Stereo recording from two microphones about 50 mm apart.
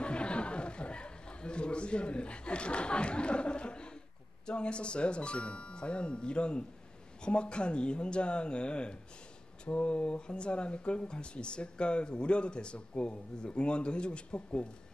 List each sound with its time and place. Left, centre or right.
0.0 s chatter: left
4.5 s speech: centre